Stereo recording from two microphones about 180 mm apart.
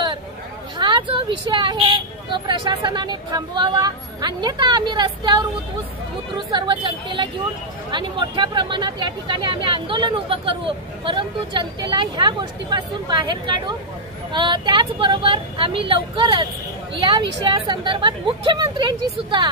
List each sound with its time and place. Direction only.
0.7 s speech: 25° right (ahead or behind)